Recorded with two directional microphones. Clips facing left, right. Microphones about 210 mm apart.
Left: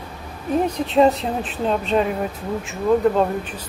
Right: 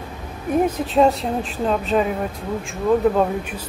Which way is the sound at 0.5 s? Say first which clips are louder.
Even; 5° right (ahead or behind).